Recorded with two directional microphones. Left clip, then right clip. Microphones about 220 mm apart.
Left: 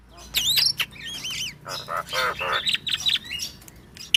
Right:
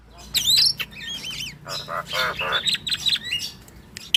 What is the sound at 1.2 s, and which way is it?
Bird, 15° left (ahead or behind).